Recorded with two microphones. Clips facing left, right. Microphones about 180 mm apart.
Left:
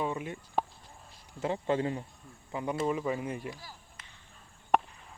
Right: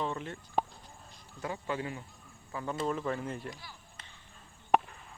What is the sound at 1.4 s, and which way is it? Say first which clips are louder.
Speech: left 6 dB; 25° left (ahead or behind).